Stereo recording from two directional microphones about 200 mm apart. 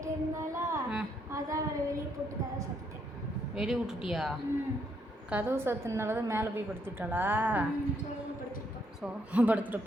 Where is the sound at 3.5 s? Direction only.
Centre (ahead or behind).